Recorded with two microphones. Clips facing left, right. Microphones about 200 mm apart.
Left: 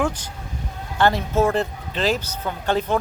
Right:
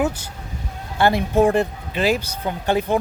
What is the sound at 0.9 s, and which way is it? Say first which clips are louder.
Speech: right 2 dB; 10° right (ahead or behind).